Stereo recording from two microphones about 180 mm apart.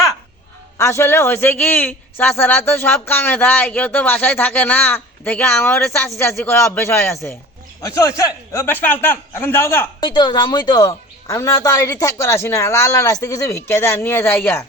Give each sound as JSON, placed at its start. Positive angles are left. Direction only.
{"t": 0.8, "sound": "a man's voice", "side_deg": 15}
{"t": 10.0, "sound": "a man's voice", "side_deg": 25}